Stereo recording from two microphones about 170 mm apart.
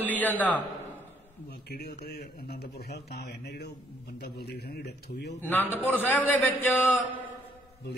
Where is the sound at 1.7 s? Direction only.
65° left (ahead or behind).